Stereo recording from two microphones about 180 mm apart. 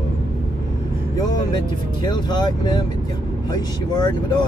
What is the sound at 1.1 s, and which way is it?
Vehicle, 20° left (ahead or behind).